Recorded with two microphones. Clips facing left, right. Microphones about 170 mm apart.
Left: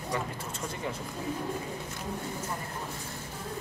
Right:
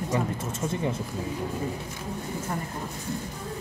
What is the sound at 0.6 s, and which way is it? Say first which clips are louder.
Speech: right 7 dB; 25° right (ahead or behind).